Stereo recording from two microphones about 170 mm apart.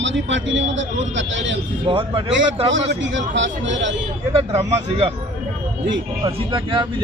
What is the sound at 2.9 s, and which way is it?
A man's voice, 90° right.